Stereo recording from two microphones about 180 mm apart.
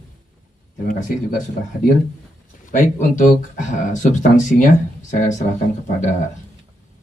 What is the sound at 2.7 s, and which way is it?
Speech, 45° left (ahead or behind).